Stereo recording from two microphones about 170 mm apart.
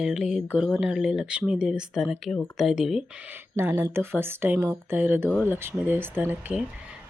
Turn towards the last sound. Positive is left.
turn(degrees=-5)  # may be behind; listen again after turning